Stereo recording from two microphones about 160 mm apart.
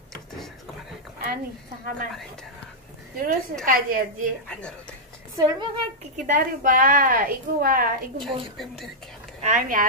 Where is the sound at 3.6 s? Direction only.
60° right (ahead or behind).